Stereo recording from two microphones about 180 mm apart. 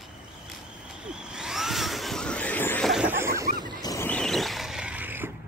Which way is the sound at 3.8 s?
20° left (ahead or behind).